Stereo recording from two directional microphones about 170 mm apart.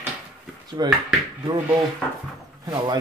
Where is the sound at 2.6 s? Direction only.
20° right (ahead or behind).